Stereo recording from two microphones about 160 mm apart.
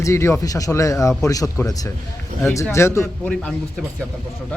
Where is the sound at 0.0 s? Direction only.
15° left (ahead or behind).